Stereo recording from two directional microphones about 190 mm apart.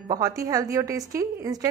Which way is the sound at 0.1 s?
15° right (ahead or behind).